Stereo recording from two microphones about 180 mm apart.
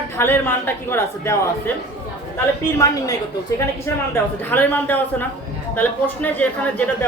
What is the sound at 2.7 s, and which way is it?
A woman's voice, 20° left (ahead or behind).